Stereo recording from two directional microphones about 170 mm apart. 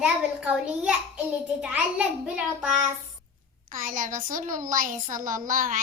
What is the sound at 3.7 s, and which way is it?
A woman's voice, 55° right (ahead or behind).